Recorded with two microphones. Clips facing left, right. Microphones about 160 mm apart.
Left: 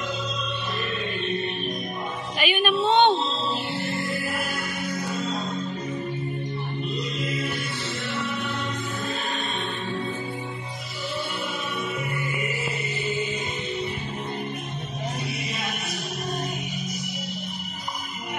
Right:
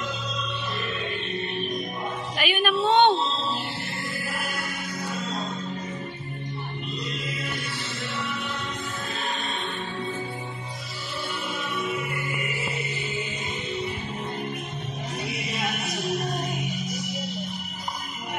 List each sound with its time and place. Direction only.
2.4 s speech: 5° right (ahead or behind)